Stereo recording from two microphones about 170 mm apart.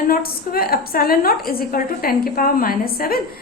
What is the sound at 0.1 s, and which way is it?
A woman's voice, 60° left (ahead or behind).